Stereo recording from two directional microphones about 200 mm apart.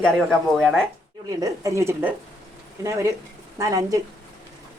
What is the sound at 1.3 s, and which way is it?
A woman's voice, 15° right (ahead or behind).